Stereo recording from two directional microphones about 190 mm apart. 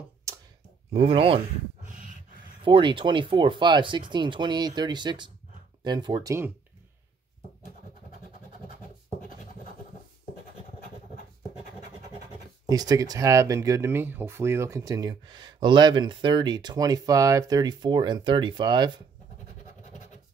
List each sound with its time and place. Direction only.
0.3 s a sound: 15° right (ahead or behind)
0.9 s speech: 30° right (ahead or behind)
2.6 s speech: 25° right (ahead or behind)
12.6 s speech: 20° right (ahead or behind)